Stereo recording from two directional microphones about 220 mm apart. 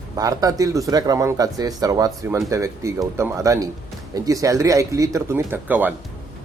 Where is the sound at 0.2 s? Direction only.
15° right (ahead or behind).